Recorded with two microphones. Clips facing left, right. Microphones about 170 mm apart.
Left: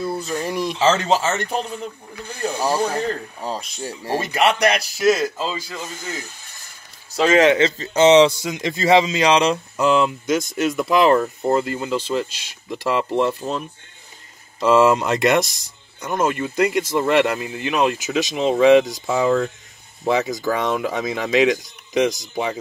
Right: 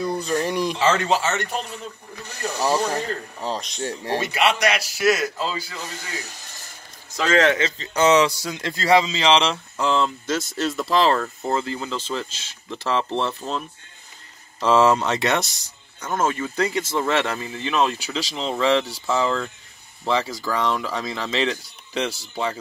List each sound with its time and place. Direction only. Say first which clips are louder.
0.0 s speech: right 1 dB; 5° left (ahead or behind)
0.8 s speech: left 4 dB; 30° left (ahead or behind)
2.5 s speech: even; 10° left (ahead or behind)
4.2 s a man's voice: left 4 dB; 45° left (ahead or behind)
5.1 s speech: left 2 dB; 30° left (ahead or behind)
7.2 s speech: left 4 dB; 15° left (ahead or behind)